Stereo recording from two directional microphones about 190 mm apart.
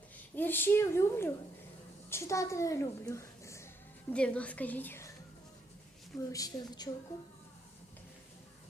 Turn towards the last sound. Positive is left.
turn(degrees=20)  # may be behind; listen again after turning